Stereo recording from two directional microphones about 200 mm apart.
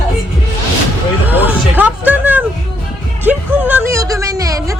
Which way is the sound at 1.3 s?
10° right (ahead or behind).